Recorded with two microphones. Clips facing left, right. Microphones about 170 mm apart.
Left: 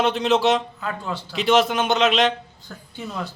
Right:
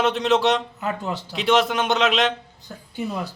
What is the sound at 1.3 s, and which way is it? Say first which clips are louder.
Speech: left 1 dB; centre (ahead or behind).